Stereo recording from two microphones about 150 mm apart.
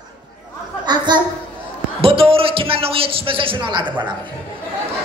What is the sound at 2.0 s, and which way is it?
A man's voice, 40° right (ahead or behind).